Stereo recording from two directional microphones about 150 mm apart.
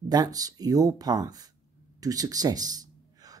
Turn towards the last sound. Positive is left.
turn(degrees=-25)  # may be behind; listen again after turning